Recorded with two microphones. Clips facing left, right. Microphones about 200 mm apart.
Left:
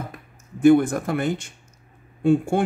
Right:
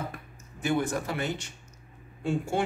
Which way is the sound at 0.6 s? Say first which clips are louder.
Left 12 dB; 55° left (ahead or behind).